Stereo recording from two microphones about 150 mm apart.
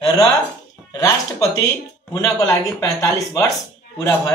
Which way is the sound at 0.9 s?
20° left (ahead or behind).